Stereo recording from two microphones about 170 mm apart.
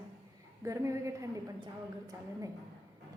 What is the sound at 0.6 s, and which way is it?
Speech, 20° right (ahead or behind).